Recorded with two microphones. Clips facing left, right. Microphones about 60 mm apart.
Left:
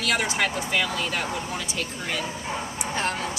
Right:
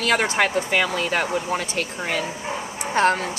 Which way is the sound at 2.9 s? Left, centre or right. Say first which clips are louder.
Right 10 dB; right.